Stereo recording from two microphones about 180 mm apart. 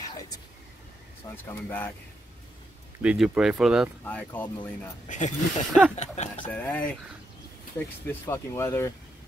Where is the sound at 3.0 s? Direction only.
5° right (ahead or behind).